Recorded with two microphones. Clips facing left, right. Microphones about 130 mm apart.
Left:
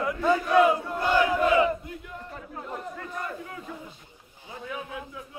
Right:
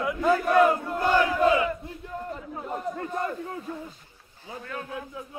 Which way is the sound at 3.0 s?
35° right (ahead or behind).